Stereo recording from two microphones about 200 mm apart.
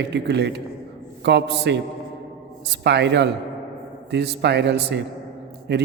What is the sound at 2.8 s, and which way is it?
Speech, 60° right (ahead or behind).